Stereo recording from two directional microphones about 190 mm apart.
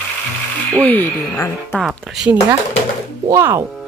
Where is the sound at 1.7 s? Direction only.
5° right (ahead or behind).